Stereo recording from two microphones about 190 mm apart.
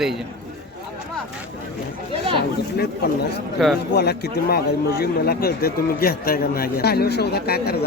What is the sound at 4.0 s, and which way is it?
A man's voice, 60° left (ahead or behind).